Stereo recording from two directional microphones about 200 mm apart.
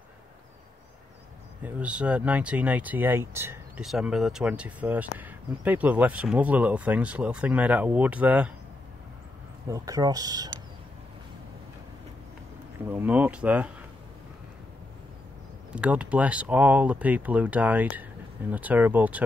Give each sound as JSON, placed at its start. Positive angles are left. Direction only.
{"t": 1.6, "sound": "speech", "side_deg": -5}
{"t": 9.7, "sound": "speech", "side_deg": -15}
{"t": 12.9, "sound": "speech", "side_deg": -10}
{"t": 15.7, "sound": "speech", "side_deg": -5}